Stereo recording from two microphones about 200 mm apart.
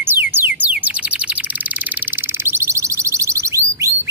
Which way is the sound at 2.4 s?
15° right (ahead or behind).